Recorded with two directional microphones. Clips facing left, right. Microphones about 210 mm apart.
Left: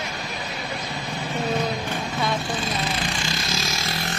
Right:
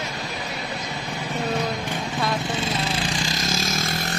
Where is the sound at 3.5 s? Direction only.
50° right (ahead or behind).